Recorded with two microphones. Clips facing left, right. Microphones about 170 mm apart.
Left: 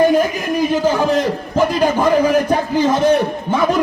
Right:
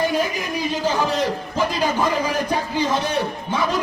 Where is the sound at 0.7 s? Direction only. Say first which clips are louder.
Left 5 dB; 50° left (ahead or behind).